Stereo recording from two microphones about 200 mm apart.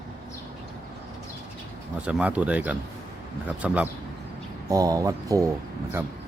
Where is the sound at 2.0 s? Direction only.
5° right (ahead or behind).